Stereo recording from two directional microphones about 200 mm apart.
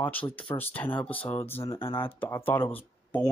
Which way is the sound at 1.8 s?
25° left (ahead or behind).